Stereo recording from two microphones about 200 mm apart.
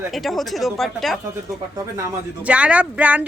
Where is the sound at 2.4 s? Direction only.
5° right (ahead or behind).